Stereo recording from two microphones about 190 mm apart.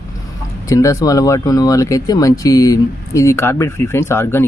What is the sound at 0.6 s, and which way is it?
Speech, 15° left (ahead or behind).